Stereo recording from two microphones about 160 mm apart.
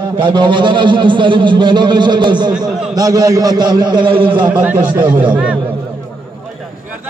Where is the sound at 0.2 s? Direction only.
30° right (ahead or behind).